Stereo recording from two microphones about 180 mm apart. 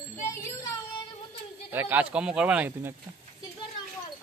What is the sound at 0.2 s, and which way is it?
Music, 15° left (ahead or behind).